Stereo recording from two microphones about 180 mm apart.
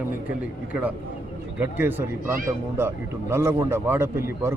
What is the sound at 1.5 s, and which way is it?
A man's voice, 10° right (ahead or behind).